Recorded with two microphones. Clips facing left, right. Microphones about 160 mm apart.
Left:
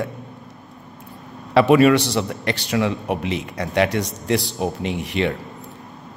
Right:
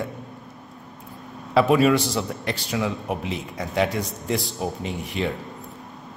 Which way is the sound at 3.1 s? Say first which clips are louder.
Left 4 dB; 75° left (ahead or behind).